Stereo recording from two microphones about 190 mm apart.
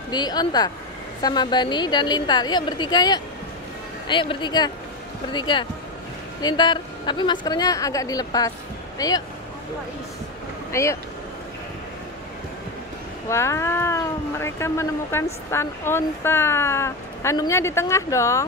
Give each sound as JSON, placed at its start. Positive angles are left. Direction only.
{"t": 0.1, "sound": "a woman's voice", "side_deg": 20}
{"t": 10.7, "sound": "speech", "side_deg": 15}
{"t": 13.3, "sound": "speech", "side_deg": 15}